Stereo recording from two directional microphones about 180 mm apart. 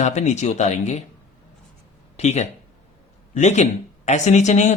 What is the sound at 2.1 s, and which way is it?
Speech, 40° left (ahead or behind).